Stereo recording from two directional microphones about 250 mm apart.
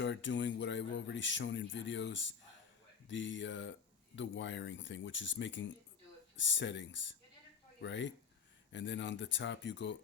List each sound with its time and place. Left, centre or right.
0.0 s speech: left